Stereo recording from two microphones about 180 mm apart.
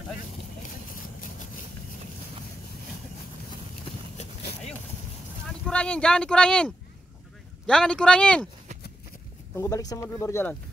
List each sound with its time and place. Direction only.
4.2 s a sound: 35° left (ahead or behind)
5.7 s speech: 5° left (ahead or behind)
9.6 s speech: 20° left (ahead or behind)